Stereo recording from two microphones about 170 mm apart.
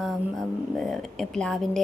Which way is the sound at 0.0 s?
Centre (ahead or behind).